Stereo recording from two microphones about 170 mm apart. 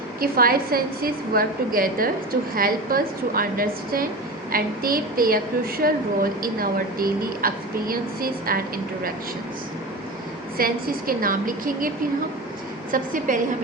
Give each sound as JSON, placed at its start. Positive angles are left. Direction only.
{"t": 0.2, "sound": "a woman's voice", "side_deg": -60}
{"t": 10.6, "sound": "a woman's voice", "side_deg": -55}
{"t": 12.9, "sound": "a woman's voice", "side_deg": -50}